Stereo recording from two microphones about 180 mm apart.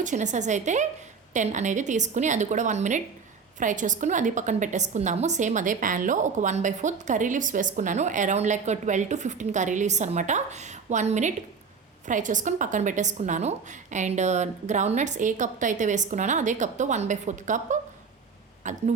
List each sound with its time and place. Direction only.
0.0 s a woman's voice: 45° right (ahead or behind)